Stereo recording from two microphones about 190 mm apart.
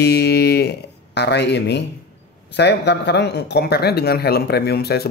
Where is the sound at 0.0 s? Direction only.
60° left (ahead or behind).